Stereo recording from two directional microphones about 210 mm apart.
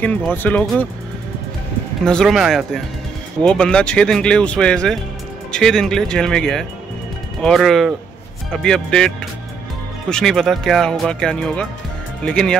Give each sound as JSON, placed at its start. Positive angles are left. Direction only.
{"t": 0.0, "sound": "speech", "side_deg": 10}
{"t": 2.0, "sound": "speech", "side_deg": 0}